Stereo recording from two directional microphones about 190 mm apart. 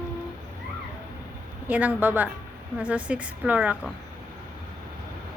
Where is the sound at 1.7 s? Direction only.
10° right (ahead or behind).